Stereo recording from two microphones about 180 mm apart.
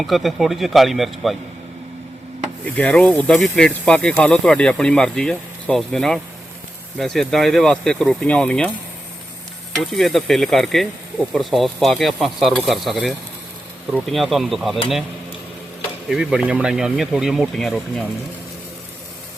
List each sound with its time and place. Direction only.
0.0 s speech: centre (ahead or behind)
2.7 s speech: 5° left (ahead or behind)
9.7 s speech: centre (ahead or behind)
16.0 s speech: 5° right (ahead or behind)